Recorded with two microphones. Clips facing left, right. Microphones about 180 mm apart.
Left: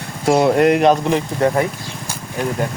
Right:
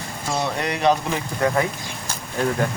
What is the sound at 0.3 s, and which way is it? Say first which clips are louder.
Speech: left 12 dB; 55° left (ahead or behind).